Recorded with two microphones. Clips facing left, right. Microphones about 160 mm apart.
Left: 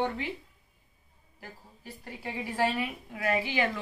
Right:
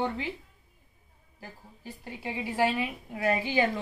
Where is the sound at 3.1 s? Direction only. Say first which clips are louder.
Right 3 dB; 30° right (ahead or behind).